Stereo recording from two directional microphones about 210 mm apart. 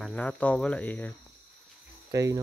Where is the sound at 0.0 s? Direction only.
5° left (ahead or behind).